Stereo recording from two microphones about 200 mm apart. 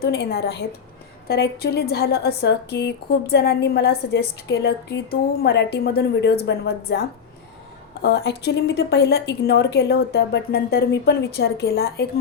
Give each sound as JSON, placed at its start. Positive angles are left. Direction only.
{"t": 0.0, "sound": "a woman's voice", "side_deg": 55}
{"t": 8.0, "sound": "a woman's voice", "side_deg": 55}